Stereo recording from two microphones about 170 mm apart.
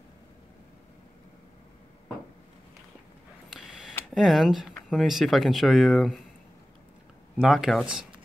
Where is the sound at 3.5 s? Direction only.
5° right (ahead or behind).